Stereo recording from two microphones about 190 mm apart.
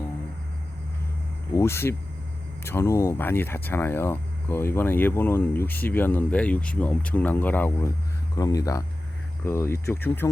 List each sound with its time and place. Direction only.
1.5 s speech: 15° left (ahead or behind)